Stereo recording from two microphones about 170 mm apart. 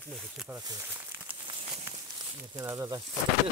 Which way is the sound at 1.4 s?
30° right (ahead or behind).